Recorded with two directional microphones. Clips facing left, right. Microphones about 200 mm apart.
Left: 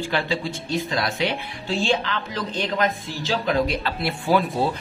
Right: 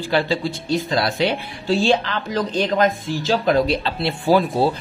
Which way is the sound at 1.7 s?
40° right (ahead or behind).